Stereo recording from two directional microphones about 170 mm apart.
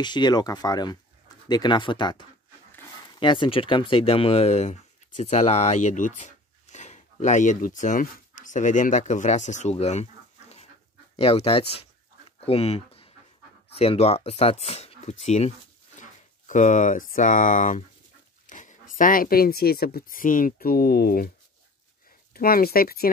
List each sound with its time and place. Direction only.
0.0 s speech: 25° left (ahead or behind)
11.1 s speech: 35° left (ahead or behind)
12.3 s pant: 35° left (ahead or behind)
13.7 s speech: 35° left (ahead or behind); by 21.3 s 60° left (ahead or behind)
22.3 s speech: 60° left (ahead or behind)